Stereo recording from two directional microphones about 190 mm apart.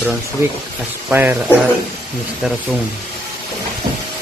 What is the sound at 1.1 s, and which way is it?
Speech, 10° right (ahead or behind).